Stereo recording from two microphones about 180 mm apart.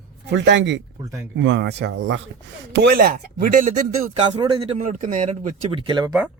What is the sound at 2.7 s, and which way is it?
Speech, 65° right (ahead or behind).